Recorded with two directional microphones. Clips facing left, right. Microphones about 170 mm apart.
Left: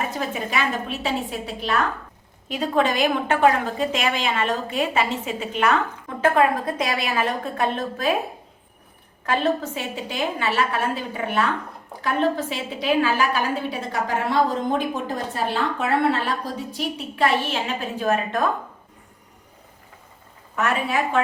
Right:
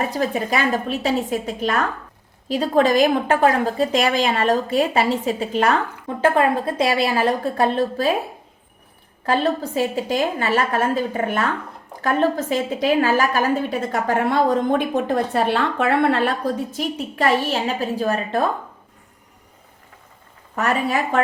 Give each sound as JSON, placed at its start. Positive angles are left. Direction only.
{"t": 0.1, "sound": "a woman's voice", "side_deg": -40}
{"t": 9.2, "sound": "a woman's voice", "side_deg": -35}
{"t": 16.7, "sound": "a woman's voice", "side_deg": -40}
{"t": 20.6, "sound": "a woman's voice", "side_deg": -40}